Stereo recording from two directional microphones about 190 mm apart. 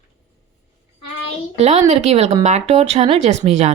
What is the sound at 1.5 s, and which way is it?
Speech, 35° right (ahead or behind).